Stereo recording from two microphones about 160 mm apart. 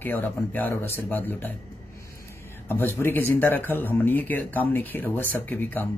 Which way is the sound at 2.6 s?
15° left (ahead or behind).